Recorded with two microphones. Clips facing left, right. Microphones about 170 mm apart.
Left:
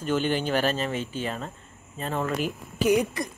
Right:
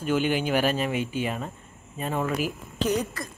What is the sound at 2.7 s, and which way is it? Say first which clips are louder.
Speech: left 4 dB; 10° left (ahead or behind).